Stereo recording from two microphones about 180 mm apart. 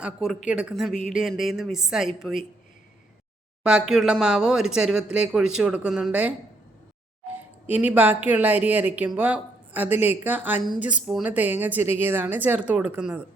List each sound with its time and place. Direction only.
0.0 s speech: centre (ahead or behind)
3.6 s speech: 5° right (ahead or behind)
7.7 s a woman's voice: 10° right (ahead or behind)